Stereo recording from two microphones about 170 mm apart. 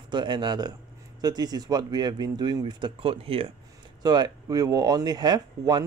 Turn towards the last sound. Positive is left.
turn(degrees=-25)  # may be behind; listen again after turning